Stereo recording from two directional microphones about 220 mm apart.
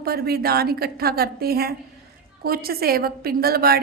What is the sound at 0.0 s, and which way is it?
A woman's voice, 45° right (ahead or behind).